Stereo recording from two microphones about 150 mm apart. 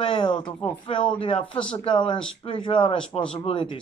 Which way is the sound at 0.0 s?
30° left (ahead or behind).